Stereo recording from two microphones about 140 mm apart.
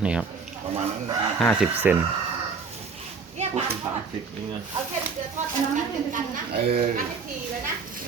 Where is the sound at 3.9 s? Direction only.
15° right (ahead or behind).